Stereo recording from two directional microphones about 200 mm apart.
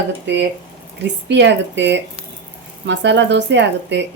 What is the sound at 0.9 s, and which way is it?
A woman's voice, 60° right (ahead or behind).